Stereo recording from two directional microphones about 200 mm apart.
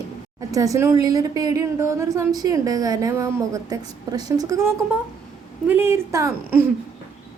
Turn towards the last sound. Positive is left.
turn(degrees=-15)  # may be behind; listen again after turning